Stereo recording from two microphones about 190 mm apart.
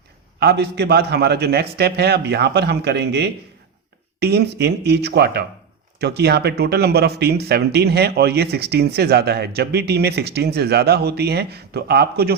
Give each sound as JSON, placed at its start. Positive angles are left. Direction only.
{"t": 0.3, "sound": "speech", "side_deg": -60}